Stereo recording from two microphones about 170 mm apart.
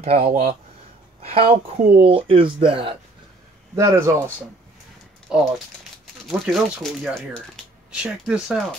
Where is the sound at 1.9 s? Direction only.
30° right (ahead or behind).